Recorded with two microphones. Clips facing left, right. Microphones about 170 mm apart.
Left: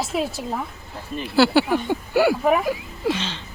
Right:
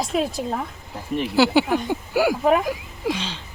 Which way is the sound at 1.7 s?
Centre (ahead or behind).